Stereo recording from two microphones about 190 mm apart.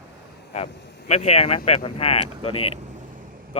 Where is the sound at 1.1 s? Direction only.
35° left (ahead or behind).